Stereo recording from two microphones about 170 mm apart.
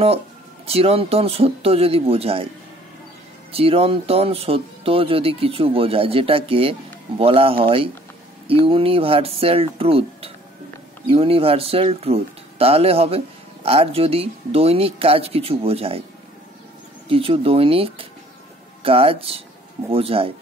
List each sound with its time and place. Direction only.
0.7 s speech: 35° right (ahead or behind)
3.5 s speech: 35° right (ahead or behind)
17.1 s speech: 35° right (ahead or behind)